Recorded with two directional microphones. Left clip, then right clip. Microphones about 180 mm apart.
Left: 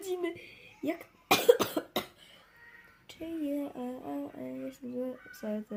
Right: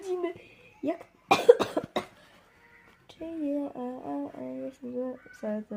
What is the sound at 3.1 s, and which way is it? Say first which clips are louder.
Speech: right 3 dB; 5° left (ahead or behind).